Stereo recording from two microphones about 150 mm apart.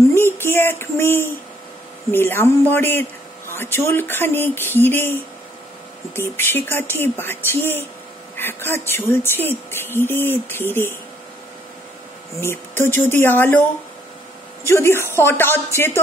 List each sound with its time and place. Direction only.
0.1 s a sound: 15° left (ahead or behind)
2.0 s speech: 15° left (ahead or behind)
12.4 s speech: 15° left (ahead or behind)